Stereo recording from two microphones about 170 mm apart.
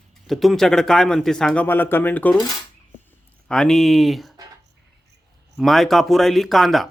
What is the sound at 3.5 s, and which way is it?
Speech, 5° left (ahead or behind).